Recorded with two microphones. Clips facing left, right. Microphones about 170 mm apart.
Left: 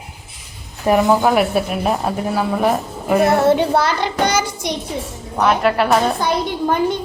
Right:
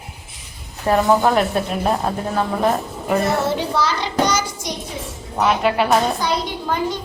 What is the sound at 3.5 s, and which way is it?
A child's voice, 55° left (ahead or behind).